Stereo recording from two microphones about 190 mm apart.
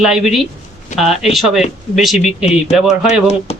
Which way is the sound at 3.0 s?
35° left (ahead or behind).